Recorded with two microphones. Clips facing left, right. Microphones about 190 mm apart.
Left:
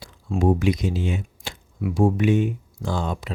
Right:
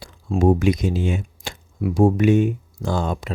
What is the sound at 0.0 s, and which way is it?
Speech, 45° right (ahead or behind).